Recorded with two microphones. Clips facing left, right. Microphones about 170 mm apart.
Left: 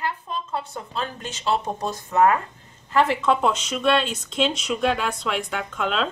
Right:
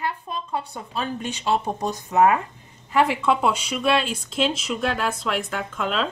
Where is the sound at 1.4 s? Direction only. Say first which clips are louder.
Even; 15° right (ahead or behind).